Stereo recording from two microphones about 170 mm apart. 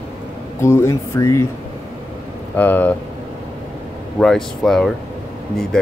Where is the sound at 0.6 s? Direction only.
15° left (ahead or behind).